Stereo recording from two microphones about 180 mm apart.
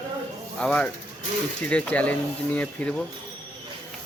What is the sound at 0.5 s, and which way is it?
Speech, 5° left (ahead or behind).